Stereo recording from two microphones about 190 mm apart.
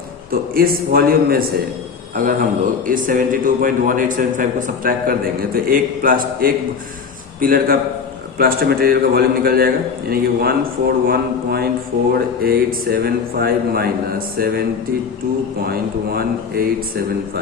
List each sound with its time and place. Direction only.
0.3 s a man's voice: 50° right (ahead or behind)
15.7 s a man's voice: 55° right (ahead or behind)